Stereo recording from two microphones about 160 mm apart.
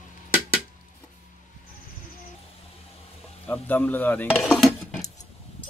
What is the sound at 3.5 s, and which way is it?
Speech, 10° left (ahead or behind).